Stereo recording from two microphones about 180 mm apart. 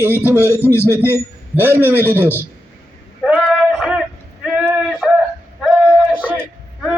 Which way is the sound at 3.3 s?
5° right (ahead or behind).